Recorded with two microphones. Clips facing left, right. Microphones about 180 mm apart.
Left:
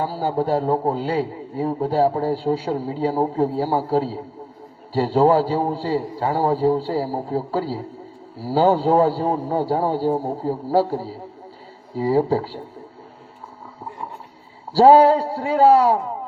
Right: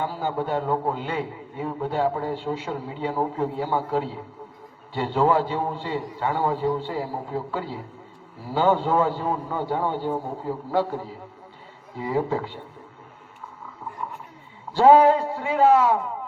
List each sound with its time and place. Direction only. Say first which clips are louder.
0.0 s a man's voice: left 5 dB; 35° left (ahead or behind)
14.7 s a man's voice: left 3 dB; 35° left (ahead or behind)